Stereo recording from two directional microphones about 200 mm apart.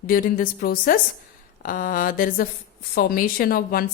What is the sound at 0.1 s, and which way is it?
A woman's voice, 50° left (ahead or behind).